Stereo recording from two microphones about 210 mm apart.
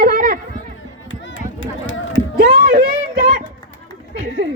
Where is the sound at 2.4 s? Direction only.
40° right (ahead or behind).